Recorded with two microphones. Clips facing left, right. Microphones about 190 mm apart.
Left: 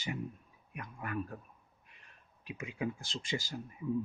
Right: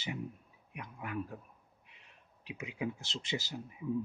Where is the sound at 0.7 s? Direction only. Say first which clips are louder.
Left 1 dB; 15° right (ahead or behind).